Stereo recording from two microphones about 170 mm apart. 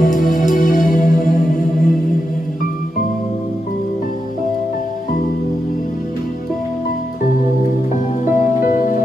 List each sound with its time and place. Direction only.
0.0 s music: 50° left (ahead or behind)
7.9 s music: 50° left (ahead or behind)